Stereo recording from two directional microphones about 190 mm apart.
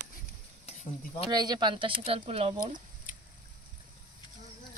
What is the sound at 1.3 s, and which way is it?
Speech, 20° right (ahead or behind).